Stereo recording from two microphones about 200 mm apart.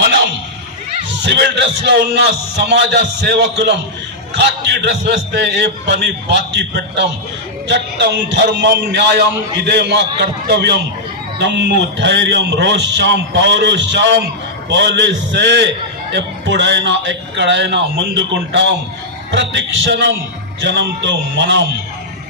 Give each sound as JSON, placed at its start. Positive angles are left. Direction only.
{"t": 1.2, "sound": "a man's voice", "side_deg": -60}